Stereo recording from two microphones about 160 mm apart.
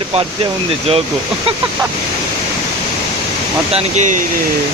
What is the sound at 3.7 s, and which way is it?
Speech, 45° right (ahead or behind).